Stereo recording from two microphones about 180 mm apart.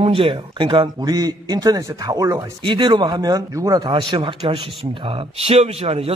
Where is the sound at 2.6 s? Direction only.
25° right (ahead or behind).